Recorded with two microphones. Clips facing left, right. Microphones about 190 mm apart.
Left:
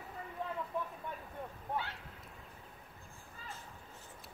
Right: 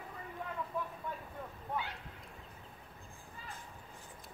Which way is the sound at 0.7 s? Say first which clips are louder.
Even; 20° left (ahead or behind).